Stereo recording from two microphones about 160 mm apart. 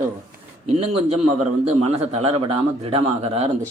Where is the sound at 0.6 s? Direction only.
40° right (ahead or behind).